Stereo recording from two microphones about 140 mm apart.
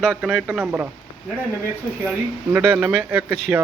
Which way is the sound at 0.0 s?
5° right (ahead or behind).